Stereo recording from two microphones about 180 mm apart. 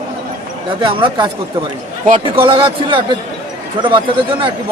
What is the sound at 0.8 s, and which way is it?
Speech, 25° right (ahead or behind).